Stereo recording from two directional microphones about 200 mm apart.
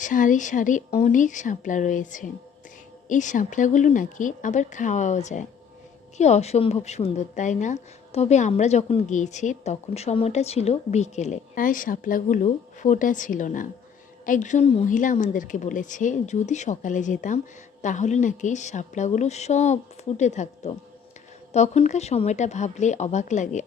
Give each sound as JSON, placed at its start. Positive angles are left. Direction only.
{"t": 0.0, "sound": "a woman's voice", "side_deg": 40}